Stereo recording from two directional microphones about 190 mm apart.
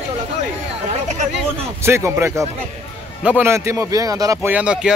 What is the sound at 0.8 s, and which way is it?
Speech, 40° right (ahead or behind).